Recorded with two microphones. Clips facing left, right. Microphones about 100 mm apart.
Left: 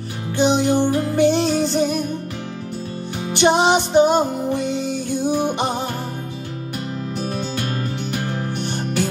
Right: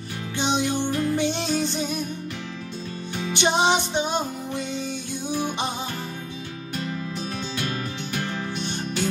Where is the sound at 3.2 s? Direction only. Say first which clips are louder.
Left 5 dB; 45° left (ahead or behind).